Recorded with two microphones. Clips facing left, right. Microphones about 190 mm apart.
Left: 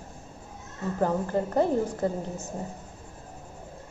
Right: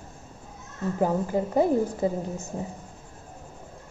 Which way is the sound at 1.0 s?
10° right (ahead or behind).